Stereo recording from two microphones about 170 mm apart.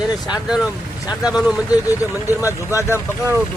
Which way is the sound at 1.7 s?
20° left (ahead or behind).